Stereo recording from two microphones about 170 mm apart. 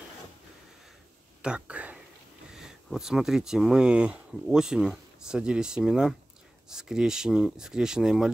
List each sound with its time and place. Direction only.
1.4 s whispering: 5° right (ahead or behind)
2.5 s speech: 5° right (ahead or behind)